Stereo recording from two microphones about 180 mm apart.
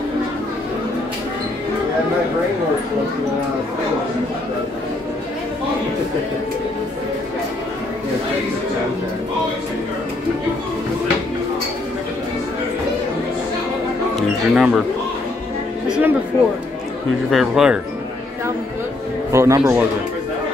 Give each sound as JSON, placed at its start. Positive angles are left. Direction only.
{"t": 14.1, "sound": "speech", "side_deg": 0}
{"t": 15.9, "sound": "speech", "side_deg": -10}
{"t": 17.3, "sound": "speech", "side_deg": 0}
{"t": 19.3, "sound": "a man's voice", "side_deg": -15}